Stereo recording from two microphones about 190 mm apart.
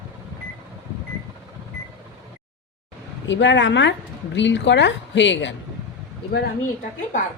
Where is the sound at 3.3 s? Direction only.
70° left (ahead or behind).